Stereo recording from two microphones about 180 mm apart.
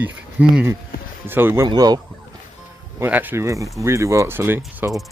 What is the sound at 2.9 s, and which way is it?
Speech, 10° right (ahead or behind).